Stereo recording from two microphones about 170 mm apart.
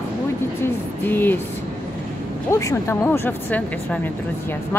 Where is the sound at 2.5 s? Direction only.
20° left (ahead or behind).